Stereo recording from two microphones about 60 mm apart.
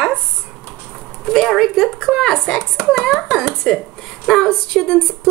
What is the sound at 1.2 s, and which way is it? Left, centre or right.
A woman's voice, centre.